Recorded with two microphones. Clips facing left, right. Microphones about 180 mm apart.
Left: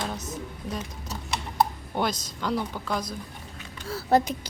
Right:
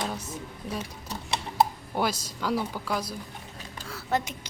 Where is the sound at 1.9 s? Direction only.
5° right (ahead or behind).